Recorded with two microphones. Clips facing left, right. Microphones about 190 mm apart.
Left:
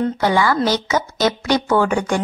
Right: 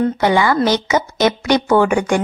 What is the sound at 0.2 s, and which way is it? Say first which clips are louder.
Speech: right 1 dB; 20° right (ahead or behind).